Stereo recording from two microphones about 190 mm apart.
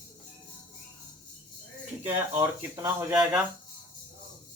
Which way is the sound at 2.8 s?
15° right (ahead or behind).